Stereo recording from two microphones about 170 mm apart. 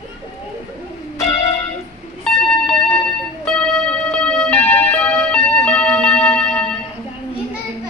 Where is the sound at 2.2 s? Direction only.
5° left (ahead or behind).